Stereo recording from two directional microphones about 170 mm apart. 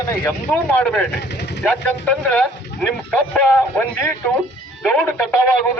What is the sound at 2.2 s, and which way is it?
A man's voice, 5° left (ahead or behind).